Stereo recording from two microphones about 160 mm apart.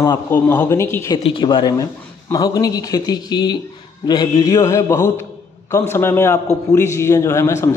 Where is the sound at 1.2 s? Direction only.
30° left (ahead or behind).